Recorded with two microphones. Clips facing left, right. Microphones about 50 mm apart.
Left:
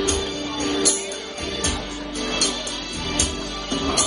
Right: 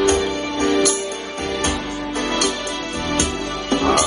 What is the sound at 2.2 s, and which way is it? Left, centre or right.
Music, right.